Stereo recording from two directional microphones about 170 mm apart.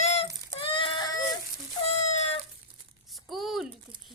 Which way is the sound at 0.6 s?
30° left (ahead or behind).